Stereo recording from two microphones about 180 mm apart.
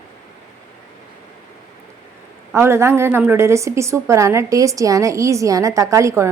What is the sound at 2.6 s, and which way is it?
Speech, 15° right (ahead or behind).